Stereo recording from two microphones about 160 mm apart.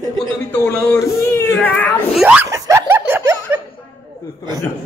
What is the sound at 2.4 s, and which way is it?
Snicker, 20° right (ahead or behind).